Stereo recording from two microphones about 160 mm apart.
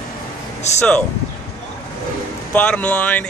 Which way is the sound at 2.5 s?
10° left (ahead or behind).